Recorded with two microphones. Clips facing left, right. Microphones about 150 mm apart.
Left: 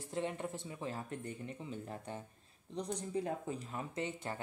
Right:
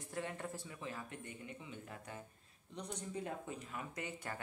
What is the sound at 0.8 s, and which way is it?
Speech, 40° left (ahead or behind).